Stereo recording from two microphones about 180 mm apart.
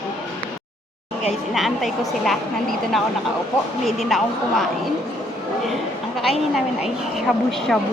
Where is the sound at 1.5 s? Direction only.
Centre (ahead or behind).